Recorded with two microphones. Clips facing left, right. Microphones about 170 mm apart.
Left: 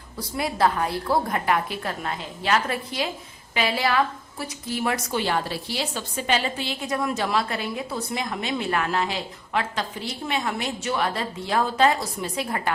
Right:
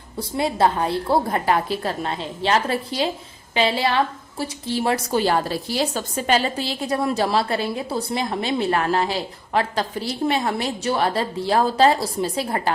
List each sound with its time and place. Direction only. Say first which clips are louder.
0.2 s a woman's voice: right 3 dB; 25° right (ahead or behind)